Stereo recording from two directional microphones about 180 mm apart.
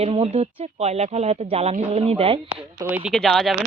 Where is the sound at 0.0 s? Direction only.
35° right (ahead or behind).